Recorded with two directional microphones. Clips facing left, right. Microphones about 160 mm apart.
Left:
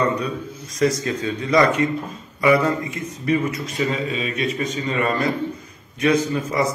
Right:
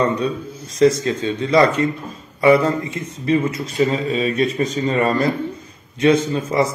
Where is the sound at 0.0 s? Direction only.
30° right (ahead or behind).